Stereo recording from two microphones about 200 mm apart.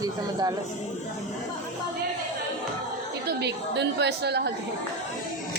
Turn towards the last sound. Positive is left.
turn(degrees=-55)  # may be behind; listen again after turning